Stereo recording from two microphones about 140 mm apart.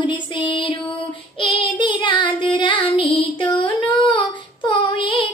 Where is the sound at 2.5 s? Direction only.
35° left (ahead or behind).